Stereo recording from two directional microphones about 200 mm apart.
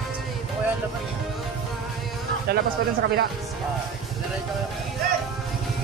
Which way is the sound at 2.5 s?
55° right (ahead or behind).